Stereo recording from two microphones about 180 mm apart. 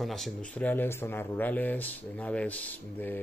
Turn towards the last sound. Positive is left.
turn(degrees=10)  # may be behind; listen again after turning